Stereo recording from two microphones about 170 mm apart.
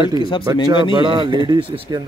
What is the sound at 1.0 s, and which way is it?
A man's voice, 30° right (ahead or behind).